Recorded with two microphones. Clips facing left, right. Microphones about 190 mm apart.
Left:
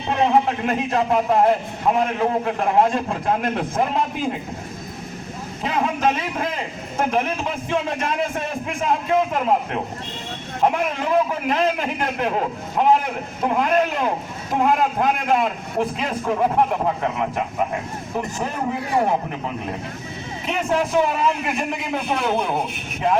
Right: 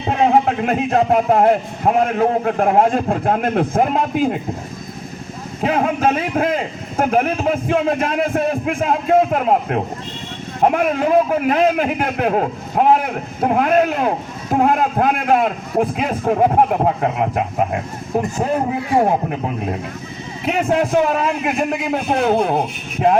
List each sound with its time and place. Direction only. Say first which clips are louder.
0.1 s a man's voice: right 3 dB; 50° right (ahead or behind)
5.6 s a man's voice: right 4 dB; 55° right (ahead or behind)
20.6 s a man's voice: right 3 dB; 50° right (ahead or behind)